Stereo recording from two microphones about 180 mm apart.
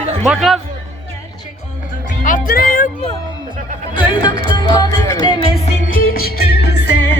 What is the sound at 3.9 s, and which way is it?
Music, 25° left (ahead or behind).